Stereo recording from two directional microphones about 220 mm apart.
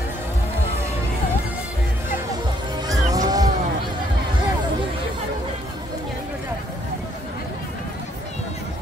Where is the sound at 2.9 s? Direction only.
15° right (ahead or behind).